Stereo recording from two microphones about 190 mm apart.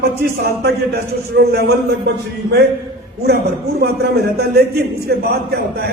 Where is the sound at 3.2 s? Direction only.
55° right (ahead or behind).